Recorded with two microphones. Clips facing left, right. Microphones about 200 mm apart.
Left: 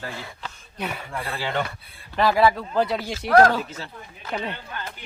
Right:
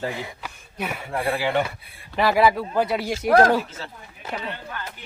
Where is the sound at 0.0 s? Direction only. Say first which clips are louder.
Right 5 dB; 20° right (ahead or behind).